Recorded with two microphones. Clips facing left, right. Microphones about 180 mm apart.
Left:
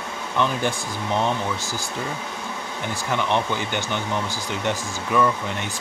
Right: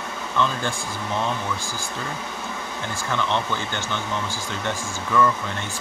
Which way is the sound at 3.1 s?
15° left (ahead or behind).